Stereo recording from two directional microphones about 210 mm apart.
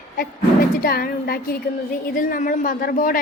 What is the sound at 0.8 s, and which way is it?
A woman's voice, 45° left (ahead or behind).